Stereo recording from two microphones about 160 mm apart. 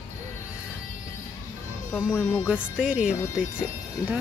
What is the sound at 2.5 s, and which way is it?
Speech, 5° right (ahead or behind).